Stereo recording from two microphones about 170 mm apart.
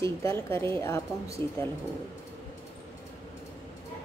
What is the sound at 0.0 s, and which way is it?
A woman's voice, 15° left (ahead or behind).